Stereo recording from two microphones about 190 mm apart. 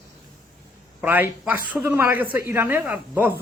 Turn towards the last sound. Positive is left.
turn(degrees=-10)  # may be behind; listen again after turning